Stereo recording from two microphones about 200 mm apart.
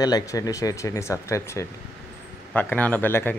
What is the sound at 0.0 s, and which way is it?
Speech, 20° left (ahead or behind).